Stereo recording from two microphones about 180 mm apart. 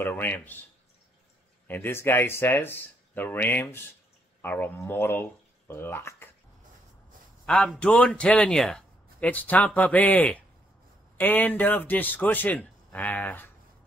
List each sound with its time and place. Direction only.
0.0 s speech: 10° left (ahead or behind)
1.7 s a man's voice: 10° left (ahead or behind)
7.4 s a man's voice: 5° left (ahead or behind)